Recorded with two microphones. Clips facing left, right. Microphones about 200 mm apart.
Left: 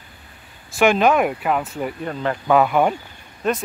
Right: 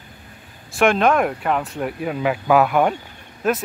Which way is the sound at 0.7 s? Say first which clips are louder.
Left 1 dB; 5° left (ahead or behind).